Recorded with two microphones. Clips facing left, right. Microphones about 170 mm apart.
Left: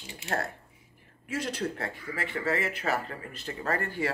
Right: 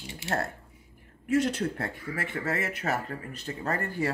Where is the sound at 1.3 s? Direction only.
55° right (ahead or behind); by 4.1 s 40° right (ahead or behind).